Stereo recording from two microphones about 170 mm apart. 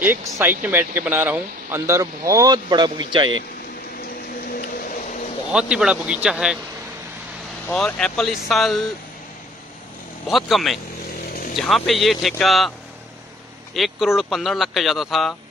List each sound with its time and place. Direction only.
0.0 s speech: 15° right (ahead or behind)
4.5 s a sound: 55° left (ahead or behind)
5.5 s speech: 5° right (ahead or behind)
7.6 s speech: 5° left (ahead or behind)
10.2 s speech: centre (ahead or behind)
13.7 s speech: centre (ahead or behind)